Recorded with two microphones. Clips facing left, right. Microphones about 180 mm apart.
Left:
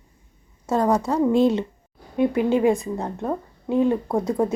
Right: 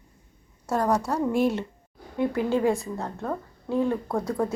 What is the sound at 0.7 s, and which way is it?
A woman's voice, 20° left (ahead or behind).